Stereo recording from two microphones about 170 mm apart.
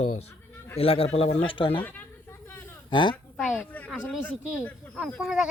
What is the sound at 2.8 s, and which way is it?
Speech, 30° left (ahead or behind).